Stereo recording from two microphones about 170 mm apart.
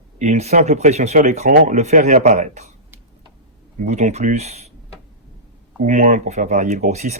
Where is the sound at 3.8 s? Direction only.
45° right (ahead or behind).